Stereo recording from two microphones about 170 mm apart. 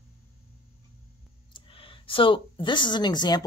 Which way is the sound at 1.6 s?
30° left (ahead or behind).